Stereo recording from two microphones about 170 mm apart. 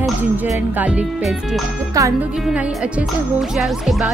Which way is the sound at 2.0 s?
20° right (ahead or behind).